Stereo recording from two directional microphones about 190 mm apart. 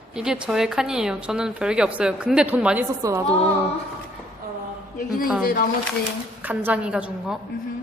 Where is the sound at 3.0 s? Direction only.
20° right (ahead or behind).